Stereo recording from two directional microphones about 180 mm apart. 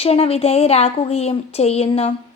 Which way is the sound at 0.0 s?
35° left (ahead or behind).